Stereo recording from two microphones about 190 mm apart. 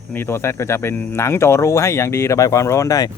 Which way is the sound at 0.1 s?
10° left (ahead or behind).